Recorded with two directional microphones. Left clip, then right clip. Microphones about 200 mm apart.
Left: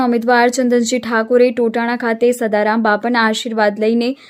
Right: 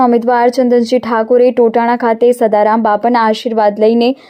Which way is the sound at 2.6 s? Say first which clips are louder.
Right 4 dB; 25° left (ahead or behind).